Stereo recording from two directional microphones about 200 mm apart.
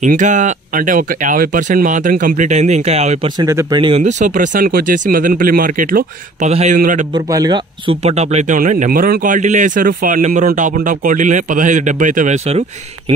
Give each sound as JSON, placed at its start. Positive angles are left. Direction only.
{"t": 0.0, "sound": "speech", "side_deg": -40}
{"t": 3.3, "sound": "speech", "side_deg": -15}
{"t": 7.2, "sound": "speech", "side_deg": -20}